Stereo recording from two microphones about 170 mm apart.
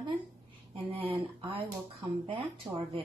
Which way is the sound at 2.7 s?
20° right (ahead or behind).